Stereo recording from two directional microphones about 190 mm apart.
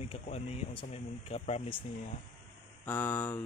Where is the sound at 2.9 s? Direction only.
10° left (ahead or behind).